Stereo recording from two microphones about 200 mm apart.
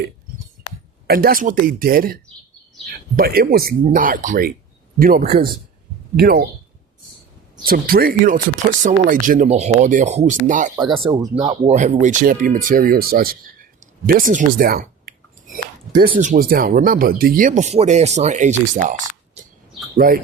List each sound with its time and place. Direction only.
1.0 s speech: 50° right (ahead or behind)
7.5 s speech: 45° right (ahead or behind)
11.0 s speech: 20° right (ahead or behind)
11.7 s speech: 35° right (ahead or behind)